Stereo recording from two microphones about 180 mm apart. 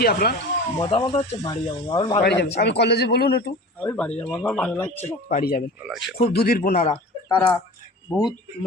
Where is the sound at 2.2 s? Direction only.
65° left (ahead or behind).